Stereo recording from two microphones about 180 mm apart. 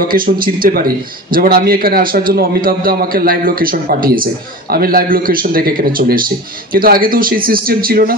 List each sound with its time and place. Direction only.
0.1 s a man's voice: 55° right (ahead or behind)